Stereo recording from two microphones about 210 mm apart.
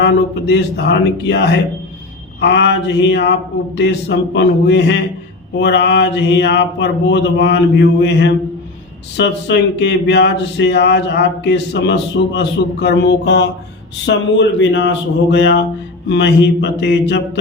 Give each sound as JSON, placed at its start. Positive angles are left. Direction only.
{"t": 0.0, "sound": "a man's voice", "side_deg": 55}